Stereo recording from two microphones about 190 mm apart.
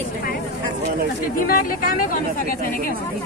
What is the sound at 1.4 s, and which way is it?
Speech, 50° left (ahead or behind).